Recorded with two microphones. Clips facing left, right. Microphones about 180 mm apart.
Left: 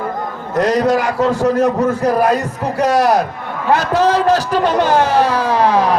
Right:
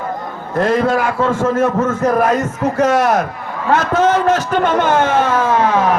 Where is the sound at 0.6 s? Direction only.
40° left (ahead or behind).